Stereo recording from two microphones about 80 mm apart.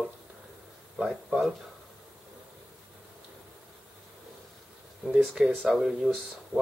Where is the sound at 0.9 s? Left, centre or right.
Centre.